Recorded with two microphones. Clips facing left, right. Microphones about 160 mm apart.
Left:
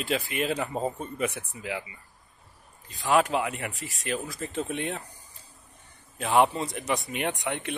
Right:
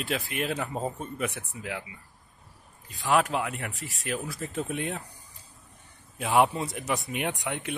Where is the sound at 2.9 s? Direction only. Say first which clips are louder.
Left 1 dB; centre (ahead or behind).